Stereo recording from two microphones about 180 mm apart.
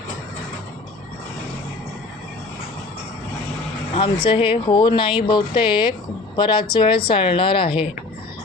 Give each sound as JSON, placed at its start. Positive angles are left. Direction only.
{"t": 3.9, "sound": "speech", "side_deg": 30}